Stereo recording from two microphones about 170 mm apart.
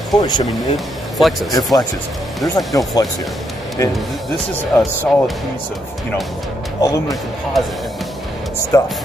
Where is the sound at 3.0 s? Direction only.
25° left (ahead or behind).